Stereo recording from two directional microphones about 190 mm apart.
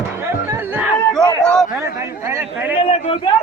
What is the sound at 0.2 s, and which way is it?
Music, 10° right (ahead or behind).